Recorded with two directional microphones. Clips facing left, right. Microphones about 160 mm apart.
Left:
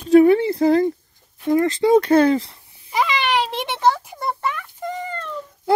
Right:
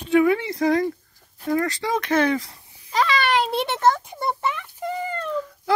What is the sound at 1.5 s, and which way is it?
Speech, 25° left (ahead or behind).